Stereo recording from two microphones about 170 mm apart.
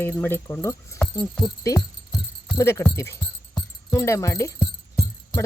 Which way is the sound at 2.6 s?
15° left (ahead or behind).